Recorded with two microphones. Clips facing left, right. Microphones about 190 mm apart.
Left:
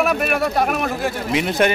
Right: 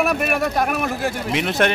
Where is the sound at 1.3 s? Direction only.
Centre (ahead or behind).